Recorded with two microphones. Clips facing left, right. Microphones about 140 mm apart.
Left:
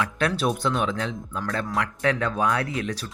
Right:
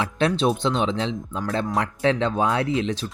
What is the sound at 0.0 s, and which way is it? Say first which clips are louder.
Speech: right 3 dB; 25° right (ahead or behind).